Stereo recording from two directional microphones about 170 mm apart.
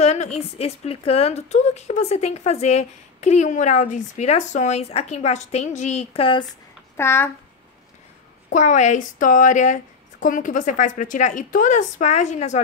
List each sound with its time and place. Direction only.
0.0 s a woman's voice: 40° left (ahead or behind)
7.0 s a child's voice: 15° left (ahead or behind)
8.5 s a woman's voice: 45° left (ahead or behind)